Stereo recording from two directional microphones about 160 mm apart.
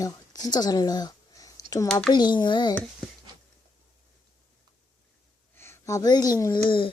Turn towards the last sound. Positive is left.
turn(degrees=30)  # may be behind; listen again after turning